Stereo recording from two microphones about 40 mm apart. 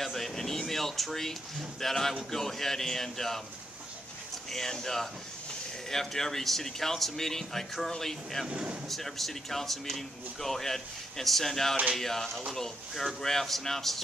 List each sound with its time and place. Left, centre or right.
0.0 s air conditioning: centre
1.8 s speech: centre
4.5 s speech: centre
8.5 s speech: right
8.8 s speech: centre